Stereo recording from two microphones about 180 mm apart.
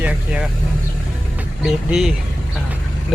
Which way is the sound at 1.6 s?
Centre (ahead or behind).